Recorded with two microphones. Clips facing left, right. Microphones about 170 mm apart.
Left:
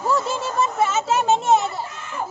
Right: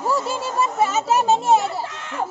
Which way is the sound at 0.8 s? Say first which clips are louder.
Right 2 dB; 35° right (ahead or behind).